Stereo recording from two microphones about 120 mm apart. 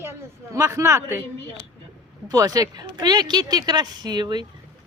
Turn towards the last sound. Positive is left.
turn(degrees=-40)  # may be behind; listen again after turning